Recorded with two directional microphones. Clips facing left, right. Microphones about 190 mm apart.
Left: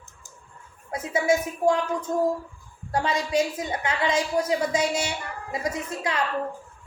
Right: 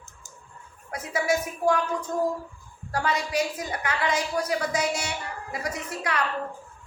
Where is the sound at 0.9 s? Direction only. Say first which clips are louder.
Left 3 dB; 25° left (ahead or behind).